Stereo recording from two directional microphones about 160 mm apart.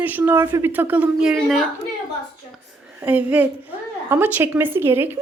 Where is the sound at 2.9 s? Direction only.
10° right (ahead or behind).